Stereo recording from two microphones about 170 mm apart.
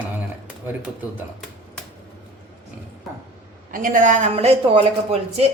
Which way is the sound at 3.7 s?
55° right (ahead or behind).